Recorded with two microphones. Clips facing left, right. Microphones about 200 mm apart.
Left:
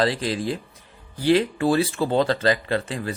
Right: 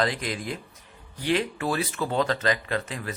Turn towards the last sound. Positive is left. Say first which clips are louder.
# left 5 dB
turn(degrees=30)  # may be behind; listen again after turning